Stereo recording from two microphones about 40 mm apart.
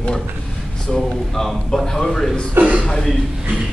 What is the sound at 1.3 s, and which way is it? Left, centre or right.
Speech, centre.